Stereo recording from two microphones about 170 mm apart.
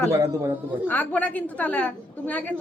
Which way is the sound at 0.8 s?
10° left (ahead or behind).